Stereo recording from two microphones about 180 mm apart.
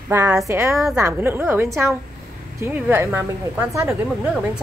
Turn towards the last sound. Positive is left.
turn(degrees=-5)  # may be behind; listen again after turning